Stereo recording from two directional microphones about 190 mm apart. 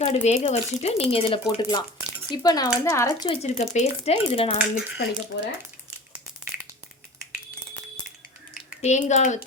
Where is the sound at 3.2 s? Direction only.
35° left (ahead or behind).